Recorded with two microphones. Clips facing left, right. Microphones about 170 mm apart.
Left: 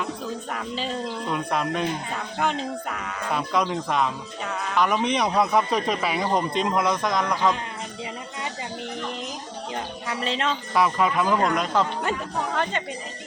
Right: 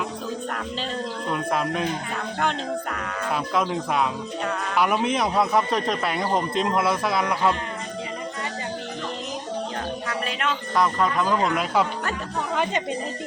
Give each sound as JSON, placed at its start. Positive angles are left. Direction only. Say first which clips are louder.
{"t": 1.3, "sound": "speech", "louder": "right 1 dB", "side_deg": 0}
{"t": 3.3, "sound": "speech", "louder": "even", "side_deg": 0}
{"t": 10.1, "sound": "a sound", "louder": "left 4 dB", "side_deg": 25}
{"t": 10.8, "sound": "speech", "louder": "left 1 dB", "side_deg": 5}
{"t": 11.5, "sound": "speech", "louder": "even", "side_deg": -10}